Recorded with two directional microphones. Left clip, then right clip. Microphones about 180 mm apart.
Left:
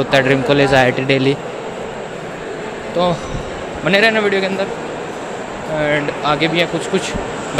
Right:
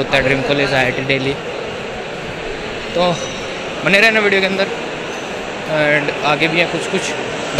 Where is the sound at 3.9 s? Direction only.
10° left (ahead or behind).